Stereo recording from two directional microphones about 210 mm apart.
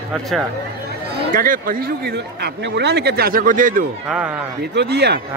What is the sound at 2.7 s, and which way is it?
Speech, 55° right (ahead or behind).